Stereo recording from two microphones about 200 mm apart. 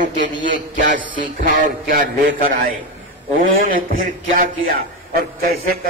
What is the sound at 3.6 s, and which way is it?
A man's voice, 45° right (ahead or behind).